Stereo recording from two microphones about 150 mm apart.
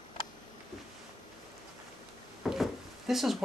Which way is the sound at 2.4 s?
Centre (ahead or behind).